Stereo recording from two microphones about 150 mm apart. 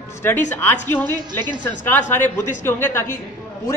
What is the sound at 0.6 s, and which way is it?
A man's voice, 15° left (ahead or behind).